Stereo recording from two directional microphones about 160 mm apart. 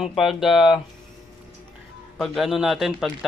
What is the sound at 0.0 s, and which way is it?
Speech, centre (ahead or behind).